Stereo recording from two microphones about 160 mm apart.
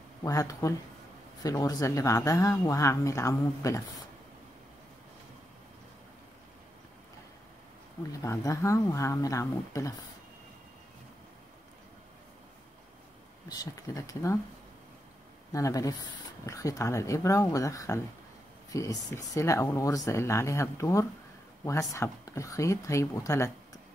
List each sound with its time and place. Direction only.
0.2 s speech: 20° left (ahead or behind)
8.2 s speech: 20° left (ahead or behind)
13.5 s speech: 25° left (ahead or behind)
15.5 s speech: 20° left (ahead or behind)